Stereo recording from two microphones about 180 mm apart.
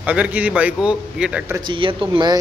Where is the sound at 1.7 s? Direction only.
30° right (ahead or behind).